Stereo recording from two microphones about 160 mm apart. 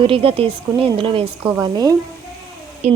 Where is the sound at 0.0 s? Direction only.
35° right (ahead or behind).